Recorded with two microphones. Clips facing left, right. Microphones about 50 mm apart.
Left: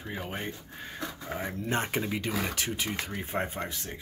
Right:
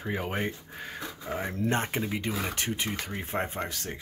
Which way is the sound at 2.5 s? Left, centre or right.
Right.